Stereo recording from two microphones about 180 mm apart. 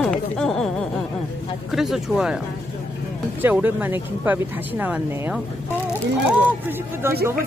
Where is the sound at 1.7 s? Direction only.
Centre (ahead or behind).